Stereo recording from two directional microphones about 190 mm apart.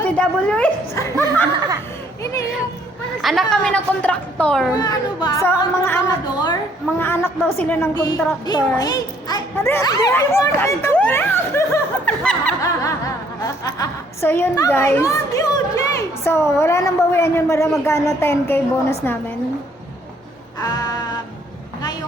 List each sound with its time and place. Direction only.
0.0 s a woman's voice: 5° left (ahead or behind)
0.9 s laughter: 15° left (ahead or behind)
3.2 s a woman's voice: centre (ahead or behind)
4.7 s a woman's voice: 20° left (ahead or behind)
13.7 s a woman's voice: 15° left (ahead or behind)
20.6 s music: 20° left (ahead or behind)